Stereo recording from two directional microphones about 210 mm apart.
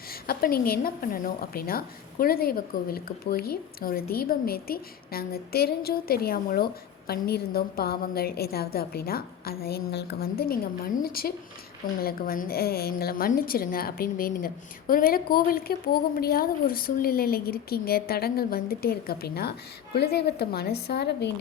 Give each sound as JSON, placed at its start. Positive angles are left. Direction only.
{"t": 0.1, "sound": "a woman's voice", "side_deg": 45}